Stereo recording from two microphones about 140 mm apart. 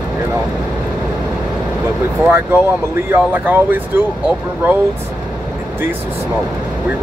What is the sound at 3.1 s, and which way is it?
Speech, 15° right (ahead or behind).